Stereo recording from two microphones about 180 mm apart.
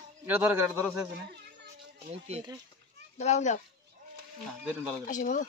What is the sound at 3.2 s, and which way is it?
Speech, 40° left (ahead or behind).